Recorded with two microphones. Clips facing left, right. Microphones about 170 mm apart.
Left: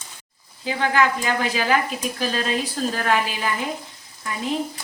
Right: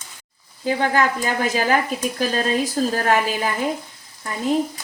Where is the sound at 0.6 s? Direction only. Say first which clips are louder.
Right 1 dB; 45° right (ahead or behind).